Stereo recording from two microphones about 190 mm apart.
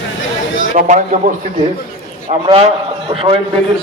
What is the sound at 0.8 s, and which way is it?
Speech, 40° right (ahead or behind).